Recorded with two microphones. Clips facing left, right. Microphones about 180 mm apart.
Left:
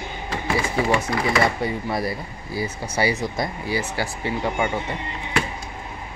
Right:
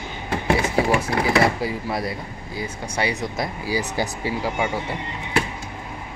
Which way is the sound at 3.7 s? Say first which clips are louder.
Right 4 dB; 20° right (ahead or behind).